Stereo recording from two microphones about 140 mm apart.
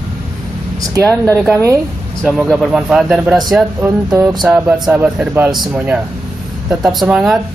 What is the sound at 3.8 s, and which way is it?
Speech, 20° right (ahead or behind).